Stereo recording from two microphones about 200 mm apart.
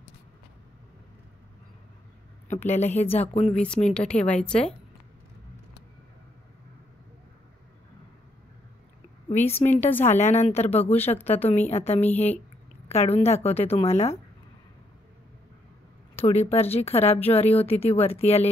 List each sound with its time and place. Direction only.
2.4 s a woman's voice: 35° left (ahead or behind)
3.5 s speech: 5° left (ahead or behind)
9.3 s speech: 35° left (ahead or behind)
9.8 s speech: 10° left (ahead or behind)
10.1 s speech: 35° left (ahead or behind)
10.9 s speech: 10° left (ahead or behind)
11.2 s speech: 30° left (ahead or behind)
16.2 s speech: 30° left (ahead or behind)